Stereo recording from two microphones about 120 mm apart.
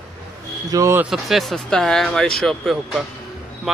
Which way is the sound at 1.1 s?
Centre (ahead or behind).